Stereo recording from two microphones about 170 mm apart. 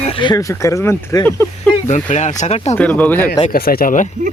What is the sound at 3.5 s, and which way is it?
Speech, 60° left (ahead or behind).